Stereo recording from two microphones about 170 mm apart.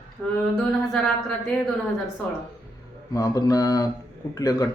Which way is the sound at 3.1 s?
20° left (ahead or behind).